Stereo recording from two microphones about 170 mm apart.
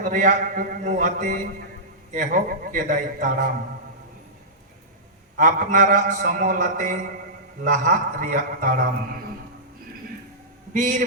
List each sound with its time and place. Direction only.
0.0 s a man's voice: 50° right (ahead or behind)
5.4 s a man's voice: 50° right (ahead or behind)
10.8 s a man's voice: 50° right (ahead or behind)